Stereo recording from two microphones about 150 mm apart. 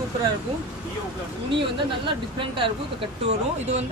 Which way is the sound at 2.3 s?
35° right (ahead or behind).